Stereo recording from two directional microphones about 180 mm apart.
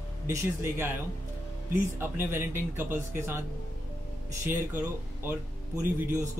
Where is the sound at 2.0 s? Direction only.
10° right (ahead or behind).